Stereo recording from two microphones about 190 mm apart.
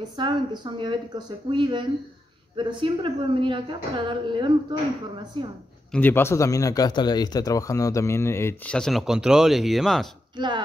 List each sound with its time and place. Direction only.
0.2 s speech: 25° right (ahead or behind)
5.9 s speech: 10° left (ahead or behind)
10.3 s speech: 25° right (ahead or behind)